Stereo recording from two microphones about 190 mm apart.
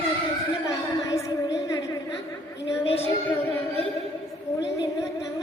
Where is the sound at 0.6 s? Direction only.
15° left (ahead or behind).